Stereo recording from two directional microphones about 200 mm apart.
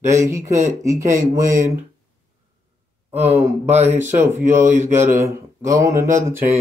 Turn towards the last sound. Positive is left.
turn(degrees=-15)  # may be behind; listen again after turning